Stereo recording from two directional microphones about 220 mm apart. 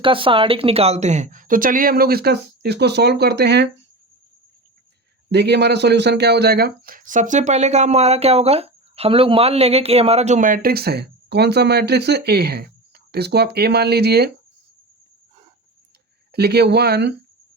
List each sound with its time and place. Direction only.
0.0 s speech: 25° right (ahead or behind); by 3.7 s 50° right (ahead or behind)
5.3 s speech: 50° right (ahead or behind)
16.3 s speech: 45° right (ahead or behind)